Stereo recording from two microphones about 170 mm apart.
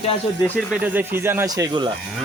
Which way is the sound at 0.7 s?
10° right (ahead or behind).